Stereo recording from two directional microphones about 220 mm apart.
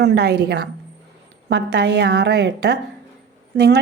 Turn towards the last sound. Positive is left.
turn(degrees=-50)  # may be behind; listen again after turning